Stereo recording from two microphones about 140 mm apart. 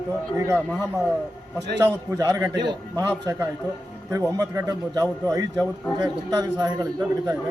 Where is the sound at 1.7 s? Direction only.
20° right (ahead or behind).